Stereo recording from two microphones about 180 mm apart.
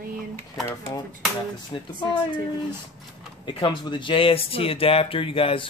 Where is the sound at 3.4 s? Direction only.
25° left (ahead or behind).